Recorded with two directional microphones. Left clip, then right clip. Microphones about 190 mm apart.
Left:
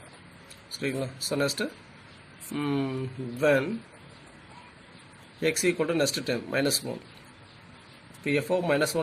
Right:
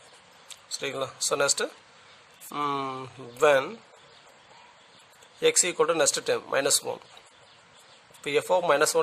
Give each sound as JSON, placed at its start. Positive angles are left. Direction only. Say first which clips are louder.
{"t": 0.7, "sound": "speech", "louder": "right 1 dB", "side_deg": -65}
{"t": 5.4, "sound": "speech", "louder": "right 3 dB", "side_deg": -60}
{"t": 8.2, "sound": "speech", "louder": "right 2 dB", "side_deg": -65}